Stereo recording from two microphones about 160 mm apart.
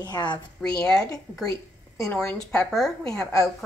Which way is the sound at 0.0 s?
25° left (ahead or behind).